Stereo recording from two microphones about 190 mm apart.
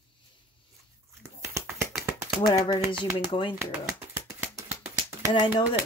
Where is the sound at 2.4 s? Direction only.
20° left (ahead or behind).